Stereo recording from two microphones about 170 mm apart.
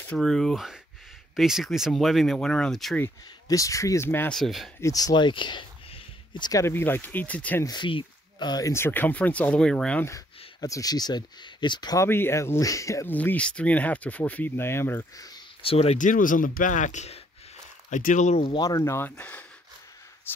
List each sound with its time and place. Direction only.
0.0 s speech: 5° left (ahead or behind)
3.4 s speech: 20° left (ahead or behind)
4.4 s speech: centre (ahead or behind)
4.7 s speech: 20° left (ahead or behind)
7.6 s speech: 25° left (ahead or behind); by 10.1 s 10° left (ahead or behind)
10.1 s speech: 20° left (ahead or behind)
15.6 s speech: 35° left (ahead or behind)
18.5 s speech: 20° left (ahead or behind)